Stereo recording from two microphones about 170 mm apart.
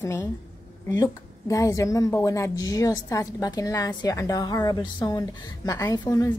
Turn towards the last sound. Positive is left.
turn(degrees=20)  # may be behind; listen again after turning